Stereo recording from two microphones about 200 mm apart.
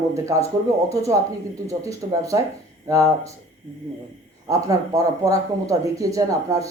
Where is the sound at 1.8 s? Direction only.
15° right (ahead or behind).